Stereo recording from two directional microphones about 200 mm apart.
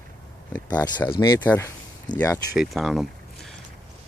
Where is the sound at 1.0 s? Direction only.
20° left (ahead or behind).